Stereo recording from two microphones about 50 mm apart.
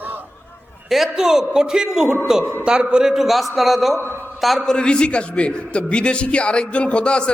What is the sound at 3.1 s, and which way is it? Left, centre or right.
A man's voice, centre.